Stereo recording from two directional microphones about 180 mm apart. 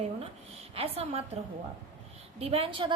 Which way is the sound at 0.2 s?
35° right (ahead or behind).